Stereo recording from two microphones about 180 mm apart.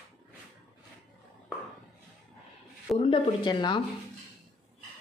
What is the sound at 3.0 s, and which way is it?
Speech, 25° left (ahead or behind).